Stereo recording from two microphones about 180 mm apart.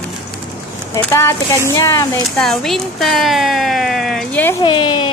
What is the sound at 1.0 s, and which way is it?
A woman's voice, 15° left (ahead or behind).